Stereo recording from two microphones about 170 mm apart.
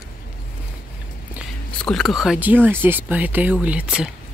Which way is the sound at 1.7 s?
5° left (ahead or behind).